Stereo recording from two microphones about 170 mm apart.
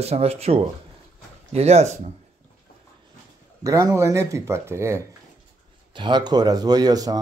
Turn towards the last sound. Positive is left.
turn(degrees=-20)  # may be behind; listen again after turning